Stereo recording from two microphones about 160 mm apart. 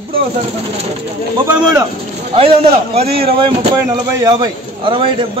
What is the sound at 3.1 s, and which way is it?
Speech, 80° right.